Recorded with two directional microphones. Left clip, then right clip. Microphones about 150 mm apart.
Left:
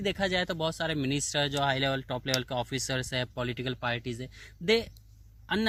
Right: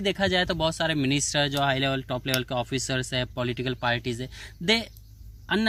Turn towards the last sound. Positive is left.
turn(degrees=30)  # may be behind; listen again after turning